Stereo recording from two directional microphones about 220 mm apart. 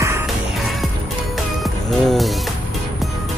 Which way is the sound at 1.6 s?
Centre (ahead or behind).